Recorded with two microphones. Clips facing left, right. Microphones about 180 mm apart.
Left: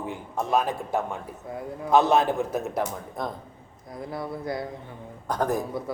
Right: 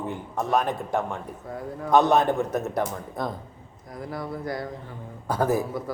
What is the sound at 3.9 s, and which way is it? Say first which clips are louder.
Speech: even; 25° left (ahead or behind).